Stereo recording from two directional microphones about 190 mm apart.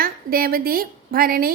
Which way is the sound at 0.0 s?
50° right (ahead or behind).